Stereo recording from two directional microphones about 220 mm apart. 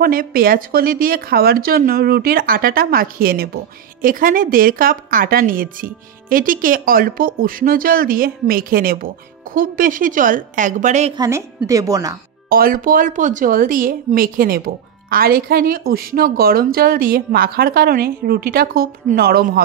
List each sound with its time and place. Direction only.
0.0 s a woman's voice: 40° right (ahead or behind)
11.1 s speech: 15° right (ahead or behind)
12.4 s a woman's voice: 40° right (ahead or behind)